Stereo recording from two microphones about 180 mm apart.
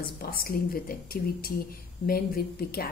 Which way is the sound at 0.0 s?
55° left (ahead or behind).